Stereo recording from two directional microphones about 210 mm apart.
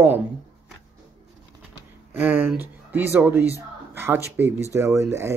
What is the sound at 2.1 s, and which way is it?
Speech, 10° right (ahead or behind).